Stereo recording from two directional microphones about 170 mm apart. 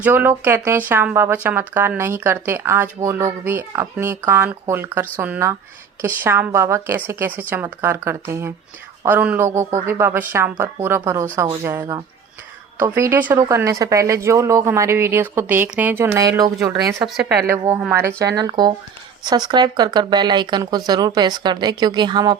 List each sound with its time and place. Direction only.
0.0 s speech: 10° right (ahead or behind)
17.0 s a woman's voice: 5° right (ahead or behind)
18.2 s speech: 20° right (ahead or behind)